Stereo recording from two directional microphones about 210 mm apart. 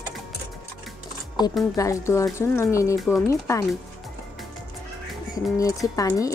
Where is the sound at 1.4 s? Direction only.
20° left (ahead or behind).